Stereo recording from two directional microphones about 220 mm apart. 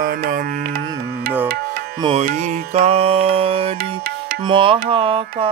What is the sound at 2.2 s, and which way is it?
Music, 30° right (ahead or behind).